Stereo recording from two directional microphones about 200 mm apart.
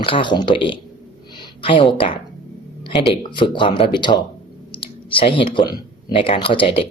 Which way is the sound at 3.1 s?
25° left (ahead or behind).